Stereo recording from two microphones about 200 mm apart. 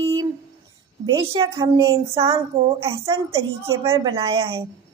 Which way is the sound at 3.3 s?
15° right (ahead or behind).